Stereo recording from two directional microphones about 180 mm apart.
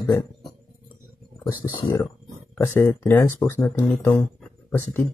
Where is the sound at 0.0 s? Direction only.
20° left (ahead or behind).